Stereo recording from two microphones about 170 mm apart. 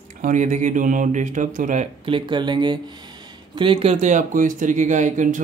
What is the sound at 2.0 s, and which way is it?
Speech, 30° right (ahead or behind).